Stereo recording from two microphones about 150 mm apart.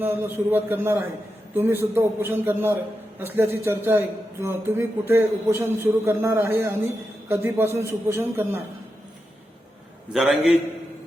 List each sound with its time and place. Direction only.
0.0 s a man's voice: 15° right (ahead or behind)
10.1 s a man's voice: 5° right (ahead or behind)